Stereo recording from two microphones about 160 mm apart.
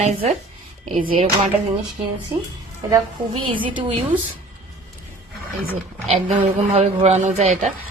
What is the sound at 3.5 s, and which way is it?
Speech, 30° right (ahead or behind).